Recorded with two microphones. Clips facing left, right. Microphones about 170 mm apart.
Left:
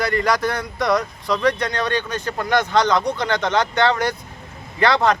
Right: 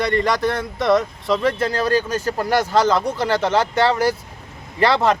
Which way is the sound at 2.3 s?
35° right (ahead or behind).